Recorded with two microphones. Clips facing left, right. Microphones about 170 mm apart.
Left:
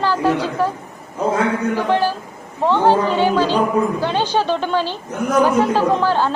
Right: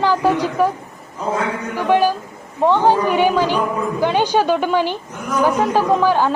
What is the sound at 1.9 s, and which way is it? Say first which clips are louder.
A woman's voice: right 3 dB; 15° right (ahead or behind).